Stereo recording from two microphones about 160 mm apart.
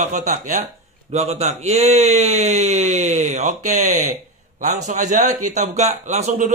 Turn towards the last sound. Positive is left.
turn(degrees=-45)  # may be behind; listen again after turning